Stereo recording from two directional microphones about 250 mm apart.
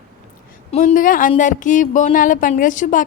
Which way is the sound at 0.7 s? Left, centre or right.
Left.